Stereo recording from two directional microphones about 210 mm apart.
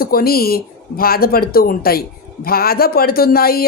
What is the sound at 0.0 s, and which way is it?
Speech, 45° left (ahead or behind).